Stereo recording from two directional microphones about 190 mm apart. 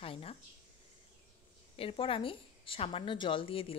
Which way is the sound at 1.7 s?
30° left (ahead or behind).